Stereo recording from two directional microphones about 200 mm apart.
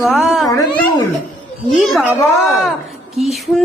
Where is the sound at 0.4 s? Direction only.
15° left (ahead or behind).